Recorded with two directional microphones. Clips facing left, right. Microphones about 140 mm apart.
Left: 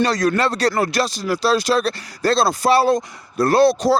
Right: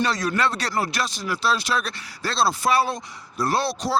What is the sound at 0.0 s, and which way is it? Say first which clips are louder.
Speech: left 5 dB; 40° left (ahead or behind).